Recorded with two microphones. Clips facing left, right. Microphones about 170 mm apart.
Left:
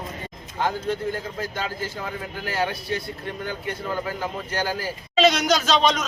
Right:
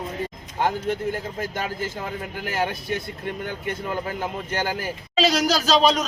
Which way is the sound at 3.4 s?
50° right (ahead or behind).